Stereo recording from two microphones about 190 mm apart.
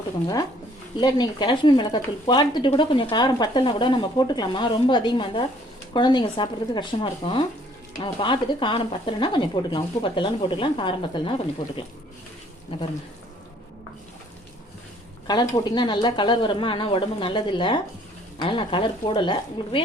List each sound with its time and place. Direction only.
0.9 s speech: 20° left (ahead or behind)
15.3 s speech: 20° left (ahead or behind)